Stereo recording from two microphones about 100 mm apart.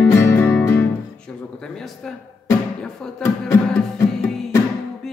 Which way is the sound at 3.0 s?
5° left (ahead or behind).